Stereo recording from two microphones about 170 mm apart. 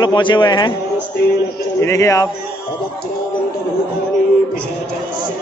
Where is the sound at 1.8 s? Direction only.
15° left (ahead or behind).